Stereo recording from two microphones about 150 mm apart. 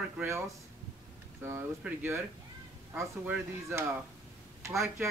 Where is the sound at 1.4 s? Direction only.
15° right (ahead or behind).